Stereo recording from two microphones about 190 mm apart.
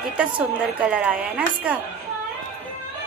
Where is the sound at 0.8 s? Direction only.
5° right (ahead or behind).